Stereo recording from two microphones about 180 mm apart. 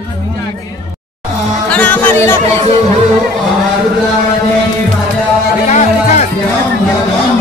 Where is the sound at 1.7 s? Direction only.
10° left (ahead or behind).